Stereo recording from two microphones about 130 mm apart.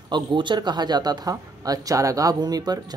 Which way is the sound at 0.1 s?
35° right (ahead or behind).